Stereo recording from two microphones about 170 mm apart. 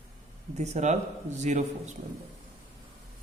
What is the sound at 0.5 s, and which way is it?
A man's voice, 40° right (ahead or behind).